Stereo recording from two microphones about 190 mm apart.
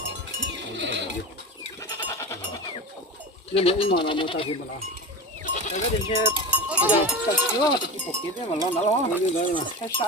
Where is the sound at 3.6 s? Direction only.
30° left (ahead or behind).